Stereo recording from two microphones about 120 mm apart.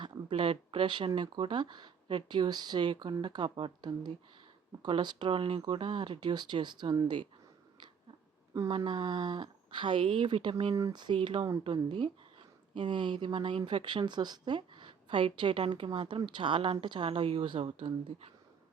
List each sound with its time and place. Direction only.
0.3 s speech: 50° right (ahead or behind)
8.7 s speech: 40° right (ahead or behind)
10.8 s speech: 35° right (ahead or behind); by 18.3 s 50° right (ahead or behind)